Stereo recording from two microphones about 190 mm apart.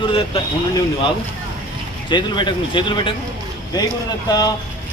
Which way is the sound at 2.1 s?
25° left (ahead or behind).